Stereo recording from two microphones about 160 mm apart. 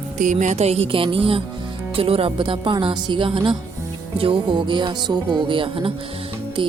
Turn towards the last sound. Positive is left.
turn(degrees=-35)  # may be behind; listen again after turning